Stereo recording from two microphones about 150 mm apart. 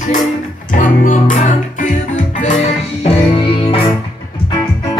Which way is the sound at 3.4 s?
35° left (ahead or behind).